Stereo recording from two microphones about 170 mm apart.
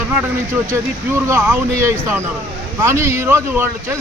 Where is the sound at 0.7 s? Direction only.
15° right (ahead or behind).